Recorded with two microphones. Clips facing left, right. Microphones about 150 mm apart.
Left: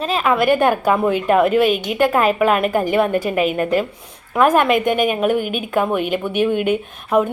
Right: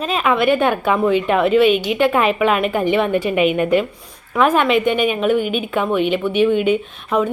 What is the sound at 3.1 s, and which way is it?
A woman's voice, 40° left (ahead or behind).